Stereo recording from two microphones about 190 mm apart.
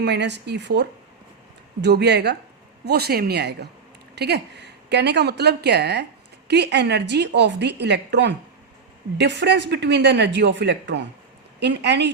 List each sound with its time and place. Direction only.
0.0 s a woman's voice: 65° right (ahead or behind)